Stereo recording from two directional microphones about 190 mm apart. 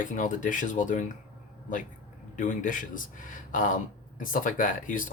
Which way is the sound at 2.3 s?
45° left (ahead or behind).